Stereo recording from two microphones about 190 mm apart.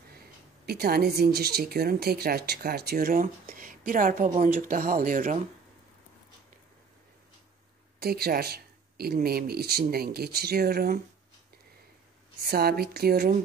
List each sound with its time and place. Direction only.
0.7 s speech: 55° right (ahead or behind)
8.0 s speech: 55° right (ahead or behind)
12.4 s speech: 55° right (ahead or behind)